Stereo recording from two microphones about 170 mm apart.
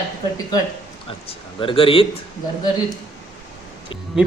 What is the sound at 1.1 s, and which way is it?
A man's voice, 30° left (ahead or behind).